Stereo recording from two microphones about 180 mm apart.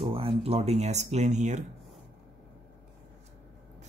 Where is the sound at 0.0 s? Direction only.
30° right (ahead or behind).